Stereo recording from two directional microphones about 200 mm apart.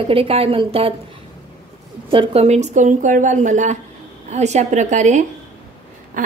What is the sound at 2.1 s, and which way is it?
A woman's voice, 30° right (ahead or behind).